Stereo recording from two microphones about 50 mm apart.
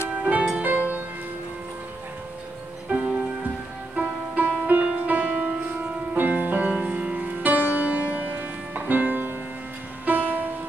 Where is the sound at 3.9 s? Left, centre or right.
Right.